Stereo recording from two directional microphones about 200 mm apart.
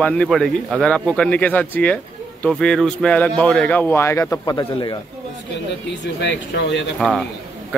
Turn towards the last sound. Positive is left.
turn(degrees=0)  # may be behind; listen again after turning